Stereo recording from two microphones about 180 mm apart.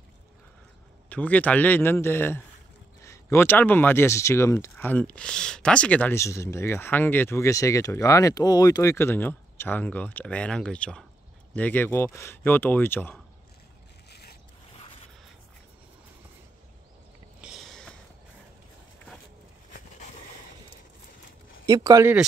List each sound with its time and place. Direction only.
1.0 s speech: 10° left (ahead or behind)
17.4 s a sound: centre (ahead or behind)
21.6 s speech: 20° right (ahead or behind)